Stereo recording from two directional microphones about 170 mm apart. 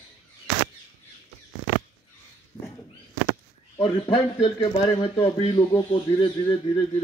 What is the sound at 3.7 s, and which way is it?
Speech, 30° left (ahead or behind).